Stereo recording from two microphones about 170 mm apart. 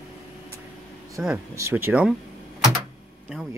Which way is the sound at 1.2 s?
10° right (ahead or behind).